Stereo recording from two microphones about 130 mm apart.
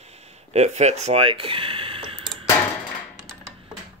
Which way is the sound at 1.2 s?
45° right (ahead or behind).